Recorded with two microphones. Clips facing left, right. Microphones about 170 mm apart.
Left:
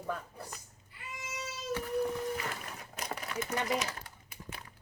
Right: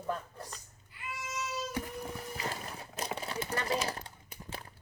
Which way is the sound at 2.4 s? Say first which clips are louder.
Right 2 dB; 30° right (ahead or behind).